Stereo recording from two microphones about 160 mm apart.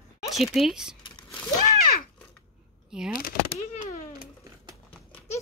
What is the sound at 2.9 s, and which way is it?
Speech, 5° right (ahead or behind).